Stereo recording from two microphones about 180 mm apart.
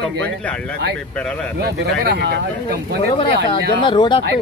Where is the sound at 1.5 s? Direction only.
65° right (ahead or behind).